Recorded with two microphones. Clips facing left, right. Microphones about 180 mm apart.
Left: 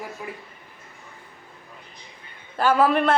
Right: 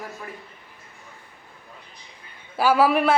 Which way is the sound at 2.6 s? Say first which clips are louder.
Right 1 dB; 5° right (ahead or behind).